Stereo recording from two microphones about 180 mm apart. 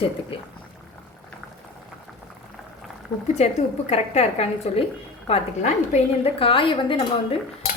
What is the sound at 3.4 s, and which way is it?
A woman's voice, 35° left (ahead or behind).